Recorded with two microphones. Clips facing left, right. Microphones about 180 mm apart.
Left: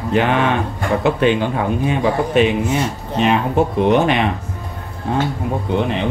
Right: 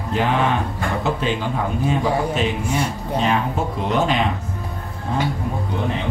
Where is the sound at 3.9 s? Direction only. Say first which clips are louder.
Left 2 dB; 65° left (ahead or behind).